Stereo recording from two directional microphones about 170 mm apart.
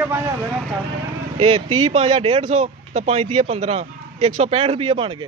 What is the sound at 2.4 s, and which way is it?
Speech, 45° right (ahead or behind).